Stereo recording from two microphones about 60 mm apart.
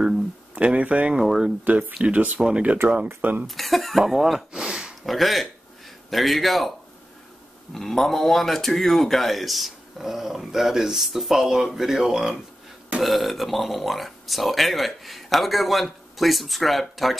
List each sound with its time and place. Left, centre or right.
0.6 s speech: right
1.2 s a man's voice: centre
1.6 s speech: right
3.2 s speech: right
3.4 s a man's voice: centre
5.0 s a man's voice: centre
7.7 s a man's voice: centre